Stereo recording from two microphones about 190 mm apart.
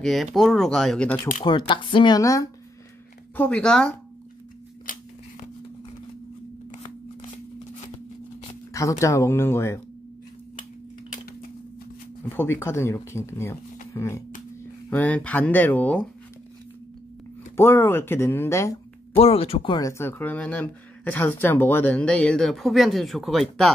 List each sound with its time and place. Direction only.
0.0 s speech: centre (ahead or behind)
1.4 s speech: 25° left (ahead or behind)
3.3 s speech: 5° left (ahead or behind)
8.7 s speech: 15° left (ahead or behind)
12.3 s speech: 10° left (ahead or behind)
17.6 s speech: 10° left (ahead or behind)
19.1 s speech: 30° left (ahead or behind)
19.9 s speech: 10° left (ahead or behind)